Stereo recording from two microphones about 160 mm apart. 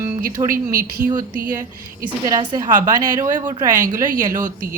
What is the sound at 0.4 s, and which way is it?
Speech, 60° right (ahead or behind).